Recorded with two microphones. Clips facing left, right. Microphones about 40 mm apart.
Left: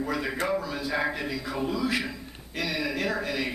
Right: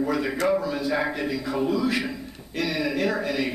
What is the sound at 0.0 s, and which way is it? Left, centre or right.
A man's voice, centre.